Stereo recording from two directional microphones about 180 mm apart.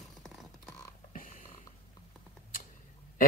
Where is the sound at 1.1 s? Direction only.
50° left (ahead or behind).